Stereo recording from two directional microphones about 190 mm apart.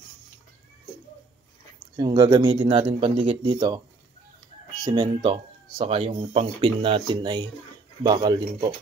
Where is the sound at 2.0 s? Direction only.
25° right (ahead or behind).